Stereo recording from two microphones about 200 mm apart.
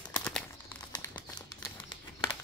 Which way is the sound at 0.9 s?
20° left (ahead or behind).